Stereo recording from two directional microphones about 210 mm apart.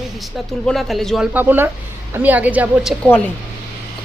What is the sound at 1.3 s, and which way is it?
A woman's voice, 10° right (ahead or behind).